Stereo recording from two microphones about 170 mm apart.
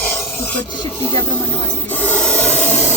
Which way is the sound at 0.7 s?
25° left (ahead or behind).